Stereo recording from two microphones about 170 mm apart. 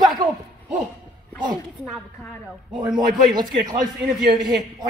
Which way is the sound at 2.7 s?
5° right (ahead or behind).